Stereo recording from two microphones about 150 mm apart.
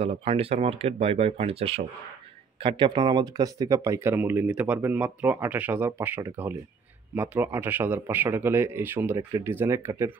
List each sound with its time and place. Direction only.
0.0 s speech: 40° right (ahead or behind); by 10.1 s 15° right (ahead or behind)